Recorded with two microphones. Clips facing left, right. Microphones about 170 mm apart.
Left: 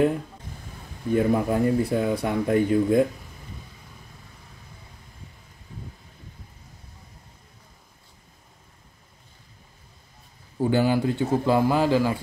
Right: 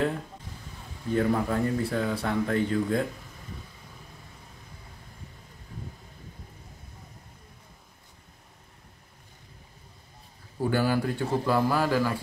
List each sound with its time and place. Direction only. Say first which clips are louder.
1.1 s speech: left 4 dB; 15° left (ahead or behind)
10.6 s a man's voice: left 4 dB; 20° left (ahead or behind)